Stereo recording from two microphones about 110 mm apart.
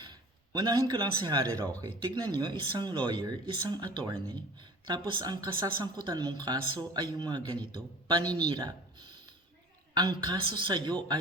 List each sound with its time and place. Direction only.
0.0 s a woman's voice: 40° right (ahead or behind)